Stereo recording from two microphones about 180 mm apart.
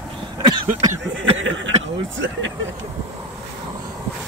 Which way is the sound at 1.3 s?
90° right.